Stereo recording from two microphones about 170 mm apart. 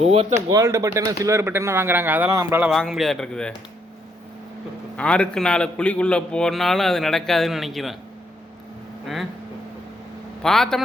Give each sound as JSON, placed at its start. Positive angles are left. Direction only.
{"t": 0.0, "sound": "speech", "side_deg": -40}
{"t": 0.3, "sound": "speech", "side_deg": -15}
{"t": 2.7, "sound": "a man's voice", "side_deg": 0}
{"t": 4.9, "sound": "a man's voice", "side_deg": 5}
{"t": 10.4, "sound": "a man's voice", "side_deg": 5}